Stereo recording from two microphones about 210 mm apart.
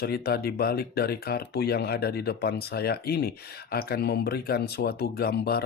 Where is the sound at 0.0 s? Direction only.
50° left (ahead or behind).